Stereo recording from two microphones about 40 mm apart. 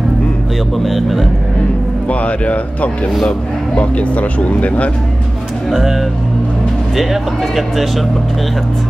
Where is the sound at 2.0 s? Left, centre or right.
Left.